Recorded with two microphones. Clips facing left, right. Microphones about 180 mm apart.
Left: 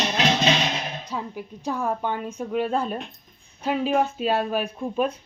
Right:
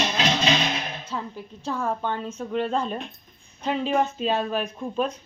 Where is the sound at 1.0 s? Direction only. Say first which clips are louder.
Left 1 dB; 15° left (ahead or behind).